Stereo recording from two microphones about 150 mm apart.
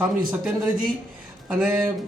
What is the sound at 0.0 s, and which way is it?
Speech, 5° right (ahead or behind).